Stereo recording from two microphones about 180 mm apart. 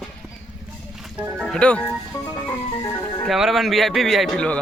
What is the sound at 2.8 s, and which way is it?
Speech, 15° left (ahead or behind).